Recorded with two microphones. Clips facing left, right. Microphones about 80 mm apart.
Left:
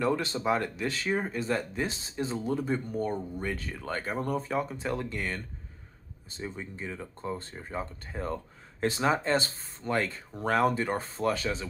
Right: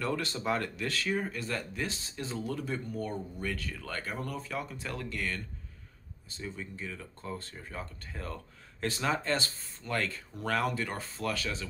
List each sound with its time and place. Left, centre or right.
0.0 s speech: left